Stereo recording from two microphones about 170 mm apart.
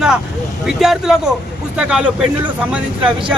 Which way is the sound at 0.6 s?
5° right (ahead or behind).